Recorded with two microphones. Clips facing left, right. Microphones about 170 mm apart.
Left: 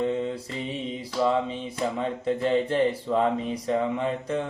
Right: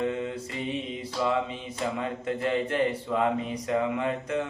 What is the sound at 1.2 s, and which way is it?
Speech, 35° left (ahead or behind).